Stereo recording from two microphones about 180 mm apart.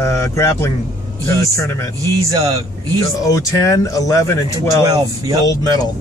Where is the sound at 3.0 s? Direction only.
20° left (ahead or behind).